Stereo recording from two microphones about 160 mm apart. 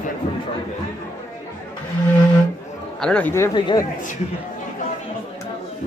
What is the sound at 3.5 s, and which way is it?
Speech, 30° left (ahead or behind).